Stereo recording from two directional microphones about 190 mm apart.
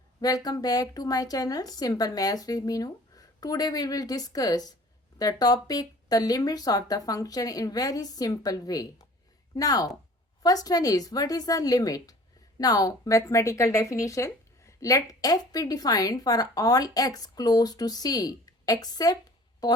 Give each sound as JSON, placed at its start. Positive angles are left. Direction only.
{"t": 0.2, "sound": "a woman's voice", "side_deg": 20}